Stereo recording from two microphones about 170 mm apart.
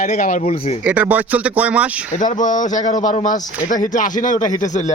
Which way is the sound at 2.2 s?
50° left (ahead or behind).